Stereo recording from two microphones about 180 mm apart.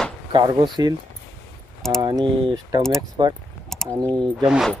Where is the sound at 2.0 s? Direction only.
20° right (ahead or behind).